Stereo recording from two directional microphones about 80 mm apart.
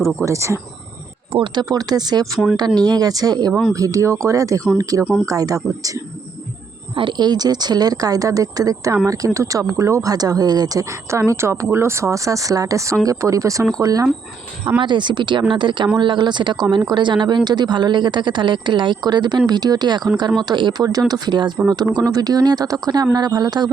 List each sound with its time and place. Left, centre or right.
0.3 s speech: right
1.6 s speech: right
6.9 s speech: right
14.8 s speech: right
21.9 s speech: right